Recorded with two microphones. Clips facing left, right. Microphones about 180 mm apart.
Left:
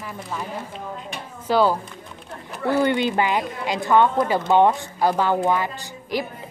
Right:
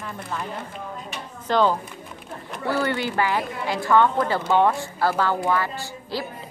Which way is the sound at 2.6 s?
20° left (ahead or behind).